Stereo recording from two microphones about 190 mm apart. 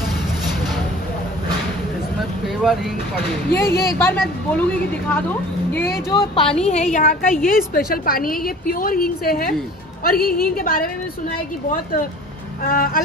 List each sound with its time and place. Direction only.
2.4 s vehicle: centre (ahead or behind)
3.5 s speech: 10° left (ahead or behind)
6.1 s speech: 25° left (ahead or behind)
6.6 s a woman's voice: 40° left (ahead or behind)
12.6 s a woman's voice: 50° left (ahead or behind)